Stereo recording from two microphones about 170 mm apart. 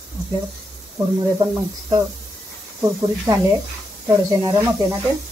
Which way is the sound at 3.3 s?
20° right (ahead or behind).